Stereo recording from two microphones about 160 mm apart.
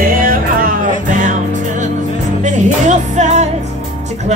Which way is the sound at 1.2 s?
50° right (ahead or behind).